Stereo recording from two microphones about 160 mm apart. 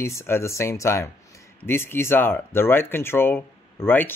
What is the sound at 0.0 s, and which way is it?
Speech, 15° left (ahead or behind).